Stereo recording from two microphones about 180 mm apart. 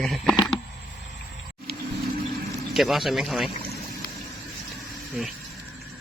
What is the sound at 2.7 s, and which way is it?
Speech, centre (ahead or behind).